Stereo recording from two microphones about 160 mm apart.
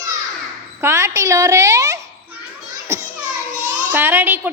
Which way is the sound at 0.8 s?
15° right (ahead or behind).